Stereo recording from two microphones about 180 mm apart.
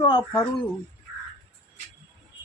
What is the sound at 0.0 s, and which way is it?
Speech, 25° left (ahead or behind).